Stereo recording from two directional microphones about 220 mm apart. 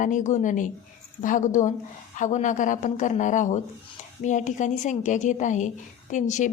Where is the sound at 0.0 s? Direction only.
35° left (ahead or behind).